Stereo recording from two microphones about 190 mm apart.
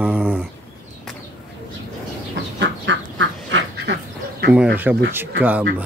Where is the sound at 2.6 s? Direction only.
70° right (ahead or behind).